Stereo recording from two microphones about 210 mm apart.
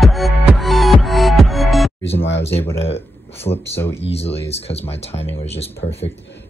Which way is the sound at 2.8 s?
30° left (ahead or behind).